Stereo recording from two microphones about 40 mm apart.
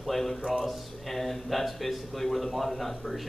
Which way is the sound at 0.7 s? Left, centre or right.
Centre.